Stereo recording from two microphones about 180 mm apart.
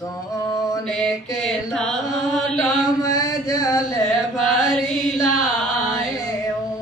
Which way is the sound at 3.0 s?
20° left (ahead or behind).